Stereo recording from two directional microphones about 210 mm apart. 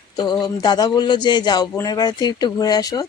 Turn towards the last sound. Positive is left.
turn(degrees=20)  # may be behind; listen again after turning